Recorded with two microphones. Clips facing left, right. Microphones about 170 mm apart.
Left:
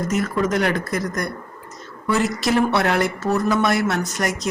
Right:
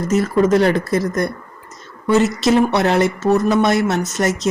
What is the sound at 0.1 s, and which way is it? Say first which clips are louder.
Speech: right 9 dB; 30° right (ahead or behind).